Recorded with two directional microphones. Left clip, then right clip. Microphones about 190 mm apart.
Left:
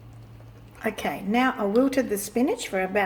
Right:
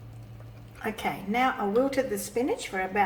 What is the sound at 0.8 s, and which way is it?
A woman's voice, 45° left (ahead or behind).